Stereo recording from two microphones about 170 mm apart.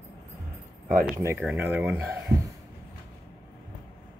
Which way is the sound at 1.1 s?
15° right (ahead or behind).